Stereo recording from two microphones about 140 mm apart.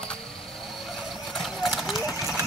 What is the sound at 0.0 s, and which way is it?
Vehicle, 5° left (ahead or behind).